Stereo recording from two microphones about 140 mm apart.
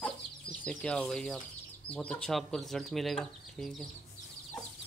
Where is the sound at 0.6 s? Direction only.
5° left (ahead or behind).